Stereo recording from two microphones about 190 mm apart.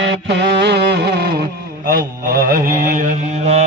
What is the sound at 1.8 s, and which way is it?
Mantra, 50° right (ahead or behind).